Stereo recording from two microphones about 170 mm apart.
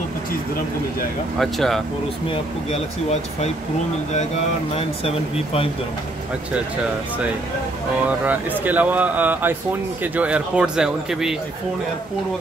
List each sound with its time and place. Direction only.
1.4 s speech: centre (ahead or behind)
2.7 s speech: 40° left (ahead or behind)
4.7 s speech: 35° left (ahead or behind)
8.3 s speech: 10° right (ahead or behind)